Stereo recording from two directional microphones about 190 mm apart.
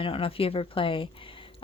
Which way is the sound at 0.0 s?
30° left (ahead or behind).